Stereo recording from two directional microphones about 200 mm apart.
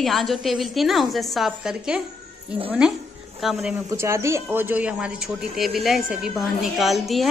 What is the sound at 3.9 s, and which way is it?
A woman's voice, 15° right (ahead or behind).